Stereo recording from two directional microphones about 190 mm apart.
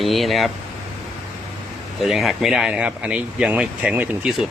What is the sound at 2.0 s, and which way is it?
Speech, centre (ahead or behind).